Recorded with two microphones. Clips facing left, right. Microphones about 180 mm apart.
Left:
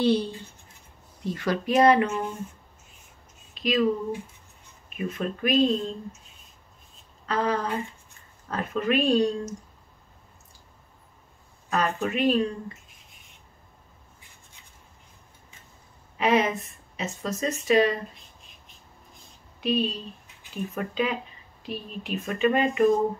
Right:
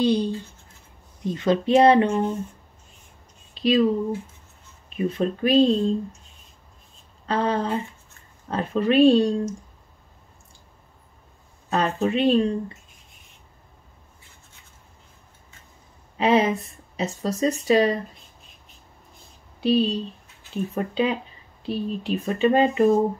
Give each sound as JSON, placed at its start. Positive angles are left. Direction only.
{"t": 0.0, "sound": "speech", "side_deg": -15}
{"t": 3.5, "sound": "a sound", "side_deg": -30}
{"t": 4.8, "sound": "speech", "side_deg": -30}
{"t": 7.2, "sound": "speech", "side_deg": -30}
{"t": 11.7, "sound": "speech", "side_deg": -30}
{"t": 16.2, "sound": "speech", "side_deg": -30}
{"t": 19.6, "sound": "speech", "side_deg": -30}